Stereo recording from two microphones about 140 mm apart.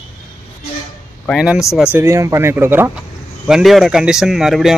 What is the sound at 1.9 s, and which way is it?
Speech, 20° right (ahead or behind).